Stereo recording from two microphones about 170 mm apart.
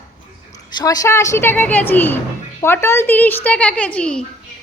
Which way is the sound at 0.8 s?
20° left (ahead or behind).